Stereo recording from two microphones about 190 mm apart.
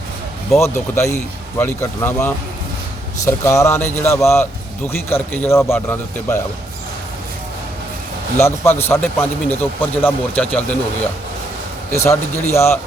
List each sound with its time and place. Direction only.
0.6 s speech: 15° left (ahead or behind)
3.2 s speech: 15° left (ahead or behind)
8.4 s speech: 15° left (ahead or behind)